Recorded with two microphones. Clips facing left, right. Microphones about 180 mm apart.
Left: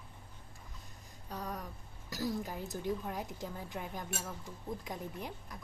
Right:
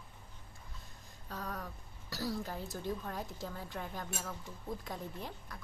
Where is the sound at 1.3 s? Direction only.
15° left (ahead or behind).